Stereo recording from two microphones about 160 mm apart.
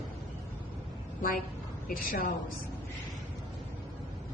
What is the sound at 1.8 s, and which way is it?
Speech, 65° left (ahead or behind).